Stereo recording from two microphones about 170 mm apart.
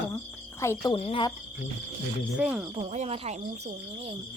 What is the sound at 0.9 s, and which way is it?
Speech, 30° left (ahead or behind).